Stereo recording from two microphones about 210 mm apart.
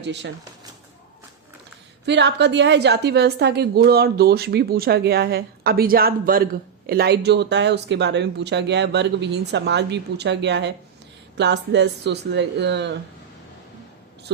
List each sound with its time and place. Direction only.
0.0 s speech: 55° right (ahead or behind)
2.0 s a woman's voice: 55° right (ahead or behind)
14.3 s speech: 55° right (ahead or behind)